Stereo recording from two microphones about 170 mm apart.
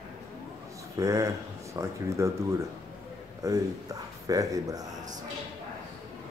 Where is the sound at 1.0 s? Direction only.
20° right (ahead or behind).